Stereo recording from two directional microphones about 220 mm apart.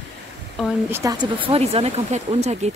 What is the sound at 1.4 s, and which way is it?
Speech, 25° right (ahead or behind).